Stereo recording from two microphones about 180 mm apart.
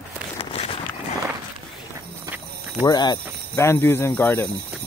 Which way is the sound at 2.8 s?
25° left (ahead or behind).